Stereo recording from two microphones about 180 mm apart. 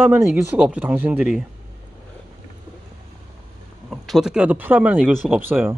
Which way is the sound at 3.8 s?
Centre (ahead or behind).